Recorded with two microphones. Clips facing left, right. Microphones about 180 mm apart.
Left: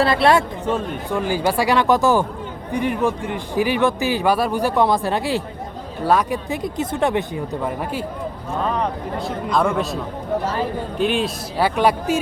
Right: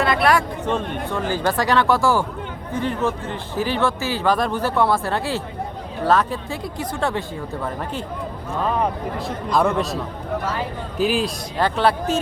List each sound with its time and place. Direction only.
0.0 s speech: 30° left (ahead or behind)
0.7 s a man's voice: 10° left (ahead or behind)
8.6 s speech: 5° right (ahead or behind)
11.5 s a man's voice: 10° left (ahead or behind)